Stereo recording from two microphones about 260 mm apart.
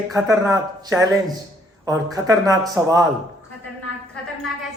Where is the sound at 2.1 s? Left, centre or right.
Centre.